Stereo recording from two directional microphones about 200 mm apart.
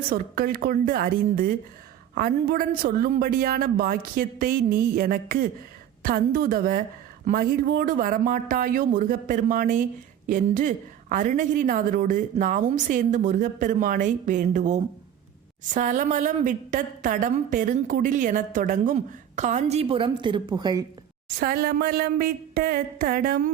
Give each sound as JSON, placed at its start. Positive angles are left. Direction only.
{"t": 0.1, "sound": "a woman's voice", "side_deg": -45}
{"t": 21.3, "sound": "a woman's voice", "side_deg": -50}